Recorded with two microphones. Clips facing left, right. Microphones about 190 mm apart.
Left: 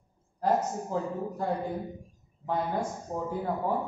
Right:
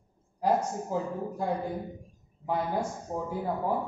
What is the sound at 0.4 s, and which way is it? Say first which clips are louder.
A woman's voice: even; 10° right (ahead or behind).